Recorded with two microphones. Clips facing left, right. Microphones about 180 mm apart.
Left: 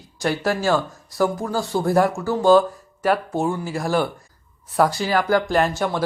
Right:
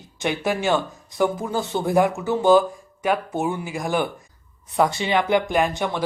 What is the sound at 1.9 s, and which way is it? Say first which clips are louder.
Speech: even; 15° right (ahead or behind).